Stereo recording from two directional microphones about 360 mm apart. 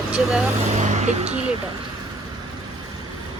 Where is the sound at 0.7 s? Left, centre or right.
Centre.